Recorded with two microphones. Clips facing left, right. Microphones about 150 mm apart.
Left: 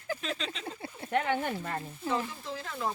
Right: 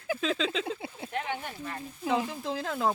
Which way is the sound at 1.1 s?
55° left (ahead or behind).